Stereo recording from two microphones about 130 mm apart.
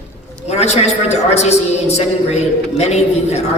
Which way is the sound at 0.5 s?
55° left (ahead or behind).